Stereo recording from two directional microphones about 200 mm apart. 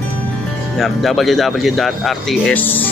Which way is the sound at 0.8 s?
Centre (ahead or behind).